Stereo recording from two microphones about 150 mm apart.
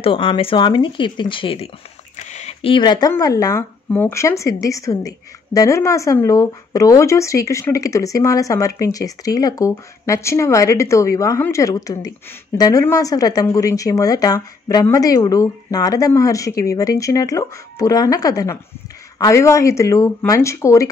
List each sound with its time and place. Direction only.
0.0 s speech: 35° left (ahead or behind)
2.1 s a sound: 50° left (ahead or behind); by 3.1 s 30° left (ahead or behind)
3.1 s a woman's voice: 25° left (ahead or behind)